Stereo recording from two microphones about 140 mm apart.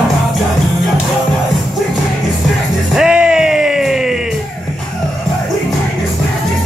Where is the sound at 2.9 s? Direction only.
5° right (ahead or behind).